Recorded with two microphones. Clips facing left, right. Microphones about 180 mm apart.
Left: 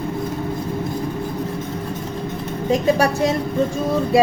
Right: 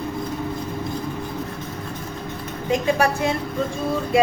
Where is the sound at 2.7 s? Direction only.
40° left (ahead or behind).